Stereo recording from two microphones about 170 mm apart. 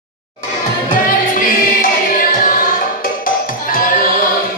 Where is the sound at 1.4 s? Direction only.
55° left (ahead or behind).